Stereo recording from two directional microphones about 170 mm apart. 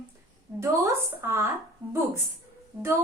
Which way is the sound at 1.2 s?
15° right (ahead or behind).